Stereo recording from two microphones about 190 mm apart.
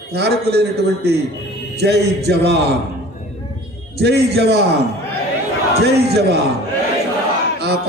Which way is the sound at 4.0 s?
60° right (ahead or behind).